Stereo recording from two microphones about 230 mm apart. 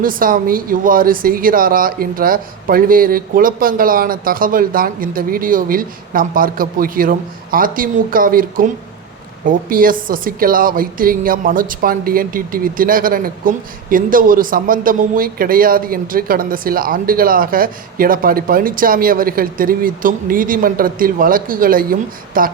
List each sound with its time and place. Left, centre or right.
0.0 s a woman's voice: right